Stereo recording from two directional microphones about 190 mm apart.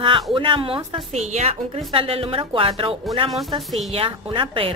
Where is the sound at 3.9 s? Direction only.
25° right (ahead or behind).